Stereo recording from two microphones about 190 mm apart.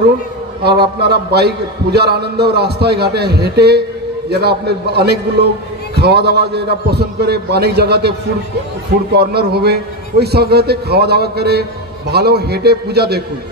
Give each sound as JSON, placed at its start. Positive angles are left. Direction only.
{"t": 0.7, "sound": "a man's voice", "side_deg": -60}
{"t": 9.1, "sound": "a man's voice", "side_deg": -55}